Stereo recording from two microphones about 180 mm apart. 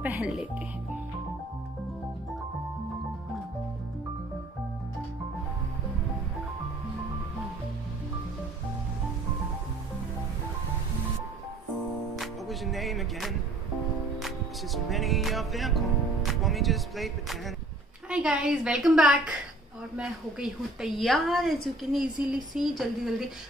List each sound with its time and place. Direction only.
0.0 s speech: 5° right (ahead or behind)
12.2 s music: centre (ahead or behind)
18.1 s a woman's voice: 5° right (ahead or behind)